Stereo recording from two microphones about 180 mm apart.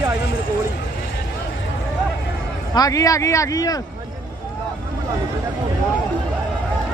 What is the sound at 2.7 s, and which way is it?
Speech, 20° left (ahead or behind).